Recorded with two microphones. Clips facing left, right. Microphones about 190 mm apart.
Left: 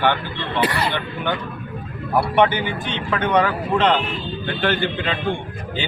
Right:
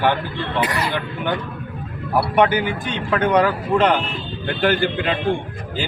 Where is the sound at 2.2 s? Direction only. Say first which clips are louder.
Right 2 dB; 10° right (ahead or behind).